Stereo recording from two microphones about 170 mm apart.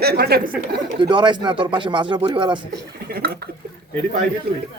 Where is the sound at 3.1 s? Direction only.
65° right (ahead or behind).